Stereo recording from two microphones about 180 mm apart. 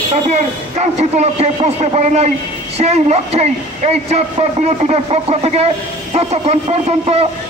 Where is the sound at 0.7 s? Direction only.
40° right (ahead or behind).